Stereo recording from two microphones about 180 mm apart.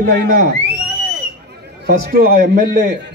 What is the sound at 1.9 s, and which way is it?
A man's voice, 60° right (ahead or behind).